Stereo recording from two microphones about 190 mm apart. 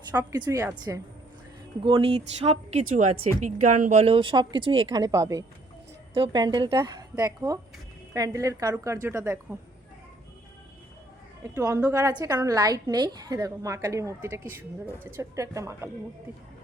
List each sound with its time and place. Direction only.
0.1 s a woman's voice: 15° right (ahead or behind)
1.8 s a woman's voice: 25° right (ahead or behind)
11.5 s a woman's voice: 15° right (ahead or behind)